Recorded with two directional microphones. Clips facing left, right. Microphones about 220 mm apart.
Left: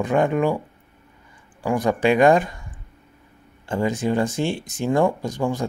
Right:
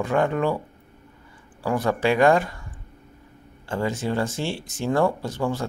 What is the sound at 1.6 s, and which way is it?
Speech, 15° left (ahead or behind).